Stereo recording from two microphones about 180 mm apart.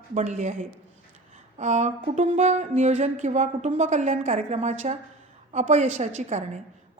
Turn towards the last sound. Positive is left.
turn(degrees=-40)  # may be behind; listen again after turning